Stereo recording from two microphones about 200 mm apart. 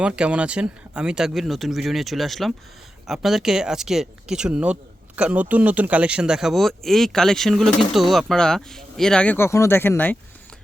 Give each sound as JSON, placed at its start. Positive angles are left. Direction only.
{"t": 0.0, "sound": "speech", "side_deg": -5}